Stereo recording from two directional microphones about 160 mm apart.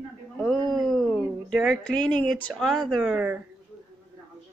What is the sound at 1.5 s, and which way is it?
Speech, 5° left (ahead or behind).